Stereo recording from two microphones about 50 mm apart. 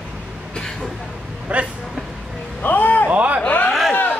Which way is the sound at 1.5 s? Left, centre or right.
Right.